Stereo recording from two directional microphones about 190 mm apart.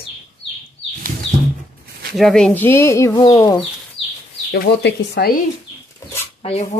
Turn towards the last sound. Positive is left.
turn(degrees=30)  # may be behind; listen again after turning